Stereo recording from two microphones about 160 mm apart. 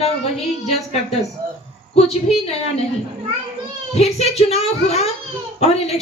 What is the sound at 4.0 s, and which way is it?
A woman's voice, 40° left (ahead or behind).